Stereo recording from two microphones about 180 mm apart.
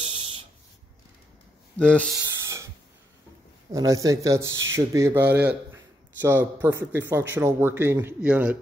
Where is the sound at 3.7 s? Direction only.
20° right (ahead or behind).